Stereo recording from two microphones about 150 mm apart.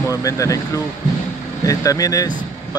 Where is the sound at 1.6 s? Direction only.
25° left (ahead or behind).